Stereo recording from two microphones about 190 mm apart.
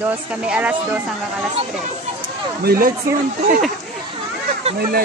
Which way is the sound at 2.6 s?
50° right (ahead or behind).